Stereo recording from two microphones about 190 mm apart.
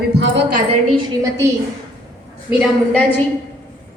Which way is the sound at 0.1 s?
65° right (ahead or behind).